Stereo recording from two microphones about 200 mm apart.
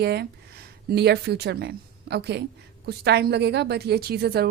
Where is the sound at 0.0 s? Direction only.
55° right (ahead or behind).